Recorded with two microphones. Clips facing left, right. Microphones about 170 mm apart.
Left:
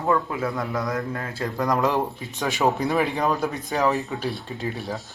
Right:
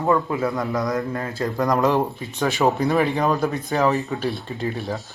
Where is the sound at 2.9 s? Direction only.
Centre (ahead or behind).